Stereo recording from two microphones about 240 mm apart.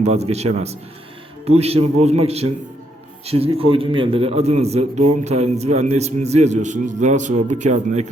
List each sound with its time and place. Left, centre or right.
0.0 s a man's voice: right